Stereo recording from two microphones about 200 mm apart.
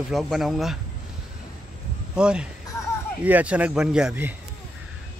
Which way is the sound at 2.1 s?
5° right (ahead or behind).